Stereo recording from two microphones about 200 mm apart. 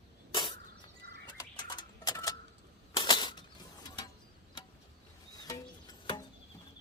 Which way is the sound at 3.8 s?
20° left (ahead or behind).